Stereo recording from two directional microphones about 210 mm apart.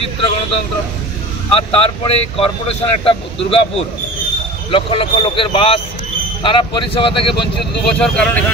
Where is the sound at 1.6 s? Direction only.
25° left (ahead or behind).